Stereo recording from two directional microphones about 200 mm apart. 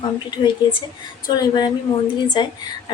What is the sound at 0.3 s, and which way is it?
A woman's voice, 20° left (ahead or behind).